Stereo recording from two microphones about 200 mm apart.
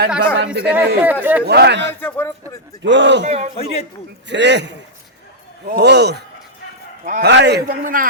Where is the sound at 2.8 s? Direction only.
65° right (ahead or behind).